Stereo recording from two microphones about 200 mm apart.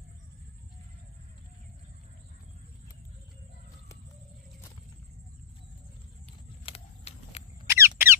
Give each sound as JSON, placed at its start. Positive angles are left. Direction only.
{"t": 6.6, "sound": "vehicle", "side_deg": 30}
{"t": 7.6, "sound": "squeak", "side_deg": -15}